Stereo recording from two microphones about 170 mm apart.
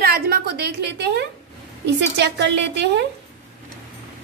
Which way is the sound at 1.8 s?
85° right.